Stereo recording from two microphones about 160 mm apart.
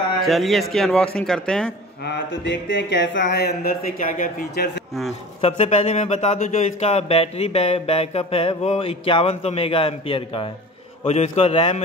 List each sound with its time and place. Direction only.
0.2 s speech: centre (ahead or behind)
2.0 s speech: 90° left; by 4.8 s 70° left (ahead or behind)
5.4 s speech: 40° left (ahead or behind)